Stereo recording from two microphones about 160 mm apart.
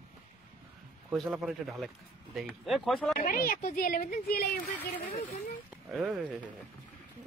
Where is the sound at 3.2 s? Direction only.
65° left (ahead or behind).